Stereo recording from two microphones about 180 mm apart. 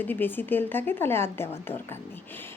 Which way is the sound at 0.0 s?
10° left (ahead or behind).